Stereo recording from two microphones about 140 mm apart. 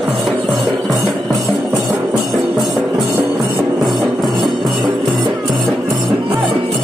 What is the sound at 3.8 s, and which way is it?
Music, centre (ahead or behind).